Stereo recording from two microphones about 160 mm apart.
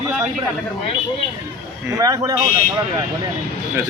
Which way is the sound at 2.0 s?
20° right (ahead or behind).